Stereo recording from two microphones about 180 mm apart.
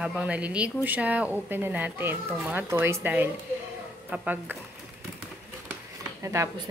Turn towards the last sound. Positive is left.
turn(degrees=-15)  # may be behind; listen again after turning